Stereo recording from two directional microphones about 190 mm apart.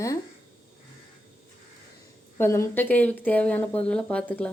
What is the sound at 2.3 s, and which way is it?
A woman's voice, 15° left (ahead or behind).